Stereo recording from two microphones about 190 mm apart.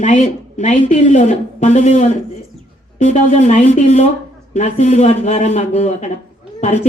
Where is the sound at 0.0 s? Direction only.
40° left (ahead or behind).